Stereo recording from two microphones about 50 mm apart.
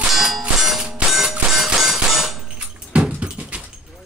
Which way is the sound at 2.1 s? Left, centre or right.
Centre.